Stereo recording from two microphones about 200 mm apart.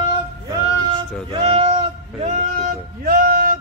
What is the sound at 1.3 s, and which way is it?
Speech, 30° right (ahead or behind).